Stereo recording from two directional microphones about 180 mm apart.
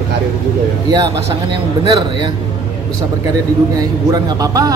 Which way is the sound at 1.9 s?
25° right (ahead or behind).